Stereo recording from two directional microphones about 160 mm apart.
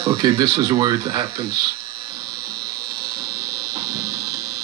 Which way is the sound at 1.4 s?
80° right.